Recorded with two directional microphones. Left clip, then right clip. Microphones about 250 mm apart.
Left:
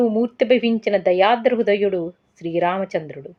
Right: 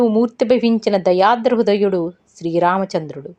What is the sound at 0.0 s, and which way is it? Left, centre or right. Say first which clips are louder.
A woman's voice: right 3 dB; centre.